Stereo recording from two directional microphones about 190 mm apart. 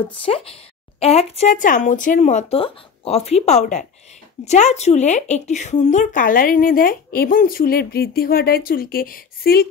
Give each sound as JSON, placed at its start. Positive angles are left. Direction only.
{"t": 0.2, "sound": "a woman's voice", "side_deg": 30}